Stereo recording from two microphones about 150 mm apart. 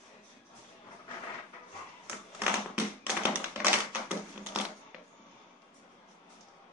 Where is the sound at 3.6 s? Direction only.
10° right (ahead or behind).